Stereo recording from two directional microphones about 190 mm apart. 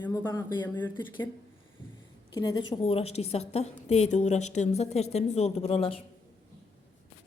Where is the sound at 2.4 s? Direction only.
20° left (ahead or behind).